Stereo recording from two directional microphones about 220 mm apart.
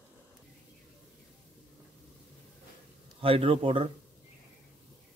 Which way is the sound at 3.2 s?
25° right (ahead or behind).